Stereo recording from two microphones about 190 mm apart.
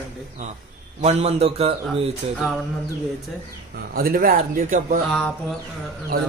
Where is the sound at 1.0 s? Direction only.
35° right (ahead or behind).